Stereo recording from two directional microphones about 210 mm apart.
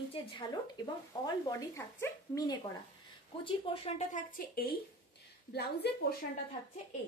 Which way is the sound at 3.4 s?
30° left (ahead or behind).